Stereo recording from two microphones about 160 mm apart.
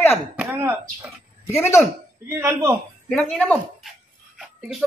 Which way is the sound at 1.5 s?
15° left (ahead or behind).